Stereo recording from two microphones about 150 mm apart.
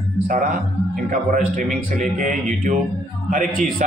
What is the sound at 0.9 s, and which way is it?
Speech, 65° right (ahead or behind).